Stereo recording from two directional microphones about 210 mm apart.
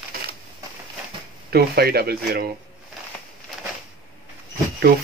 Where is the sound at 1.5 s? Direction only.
45° right (ahead or behind).